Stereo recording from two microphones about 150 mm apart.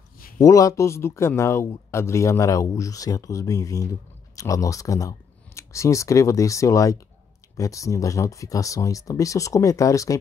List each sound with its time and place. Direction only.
0.4 s speech: 20° left (ahead or behind)